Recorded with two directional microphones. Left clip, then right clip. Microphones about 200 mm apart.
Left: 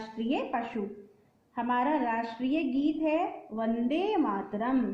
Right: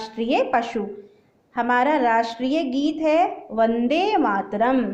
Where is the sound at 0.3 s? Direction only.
25° right (ahead or behind).